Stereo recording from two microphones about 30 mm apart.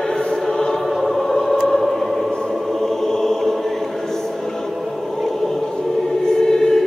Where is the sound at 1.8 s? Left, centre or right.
Centre.